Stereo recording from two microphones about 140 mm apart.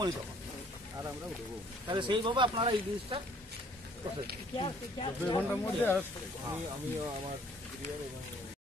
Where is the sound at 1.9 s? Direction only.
35° right (ahead or behind).